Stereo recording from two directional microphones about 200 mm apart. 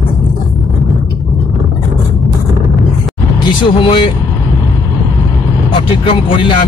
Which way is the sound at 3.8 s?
25° left (ahead or behind).